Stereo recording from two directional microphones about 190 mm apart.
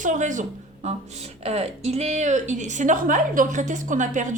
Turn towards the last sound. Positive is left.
turn(degrees=-40)  # may be behind; listen again after turning